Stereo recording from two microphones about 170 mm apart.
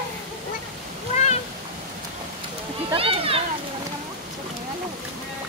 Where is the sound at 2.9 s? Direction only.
35° right (ahead or behind).